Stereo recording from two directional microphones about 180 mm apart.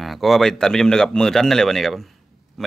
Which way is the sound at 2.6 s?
Centre (ahead or behind).